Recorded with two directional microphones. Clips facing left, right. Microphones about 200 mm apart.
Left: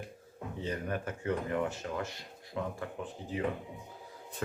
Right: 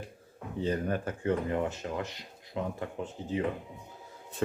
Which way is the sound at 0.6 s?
30° right (ahead or behind).